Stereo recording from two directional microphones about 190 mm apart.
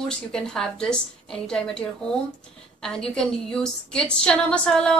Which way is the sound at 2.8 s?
5° left (ahead or behind).